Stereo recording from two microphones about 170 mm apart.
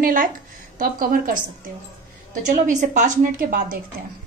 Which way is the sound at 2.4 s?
50° right (ahead or behind).